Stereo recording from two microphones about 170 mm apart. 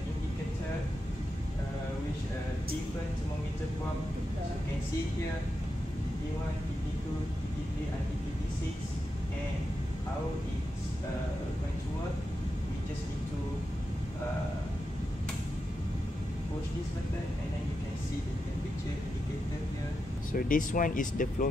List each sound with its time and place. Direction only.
20.3 s speech: 50° left (ahead or behind)